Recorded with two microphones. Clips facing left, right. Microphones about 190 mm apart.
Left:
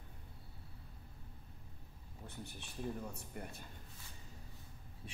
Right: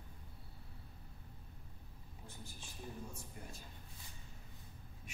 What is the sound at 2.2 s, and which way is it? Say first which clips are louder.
A man's voice: left 5 dB; 65° left (ahead or behind).